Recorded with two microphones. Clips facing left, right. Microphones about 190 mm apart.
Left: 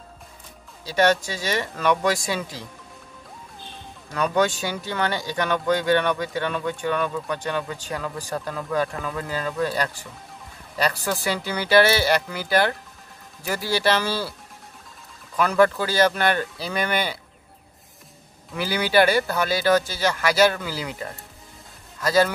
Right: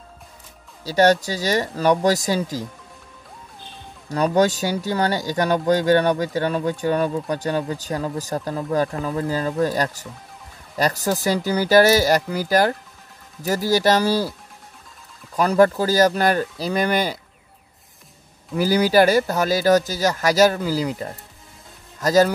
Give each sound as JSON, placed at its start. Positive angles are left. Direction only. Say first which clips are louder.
{"t": 0.8, "sound": "speech", "louder": "right 4 dB", "side_deg": -40}
{"t": 4.4, "sound": "speech", "louder": "right 4 dB", "side_deg": -40}
{"t": 15.3, "sound": "speech", "louder": "right 3 dB", "side_deg": -35}
{"t": 18.5, "sound": "speech", "louder": "right 5 dB", "side_deg": -40}